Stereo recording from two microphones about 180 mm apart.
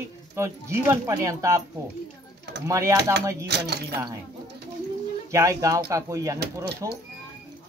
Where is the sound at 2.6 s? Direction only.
15° right (ahead or behind).